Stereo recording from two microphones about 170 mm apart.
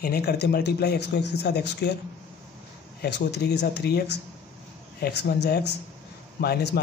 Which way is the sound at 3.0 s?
85° left.